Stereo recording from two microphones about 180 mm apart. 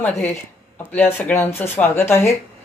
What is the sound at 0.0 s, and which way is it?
Speech, 10° left (ahead or behind).